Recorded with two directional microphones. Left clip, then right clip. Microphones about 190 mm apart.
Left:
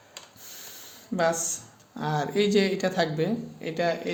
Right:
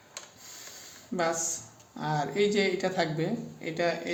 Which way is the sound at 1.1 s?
40° left (ahead or behind).